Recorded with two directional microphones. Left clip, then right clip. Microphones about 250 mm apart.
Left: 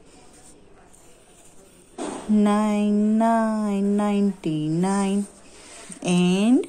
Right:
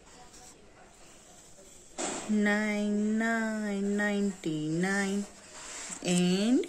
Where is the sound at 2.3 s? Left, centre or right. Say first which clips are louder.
Left 8 dB; centre.